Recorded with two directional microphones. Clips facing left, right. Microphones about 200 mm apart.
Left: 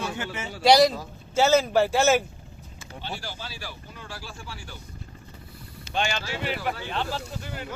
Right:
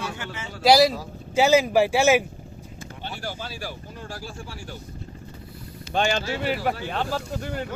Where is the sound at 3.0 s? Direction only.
45° right (ahead or behind).